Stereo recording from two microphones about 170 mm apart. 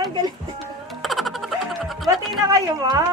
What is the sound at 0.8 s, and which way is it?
Music, centre (ahead or behind).